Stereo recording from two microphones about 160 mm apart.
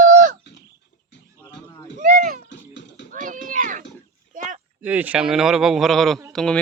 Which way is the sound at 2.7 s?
90° left.